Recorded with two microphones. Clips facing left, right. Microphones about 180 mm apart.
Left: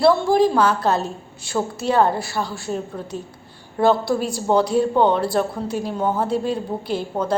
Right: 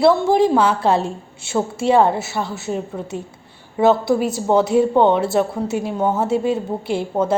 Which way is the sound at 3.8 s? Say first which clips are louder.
Right 3 dB; 20° right (ahead or behind).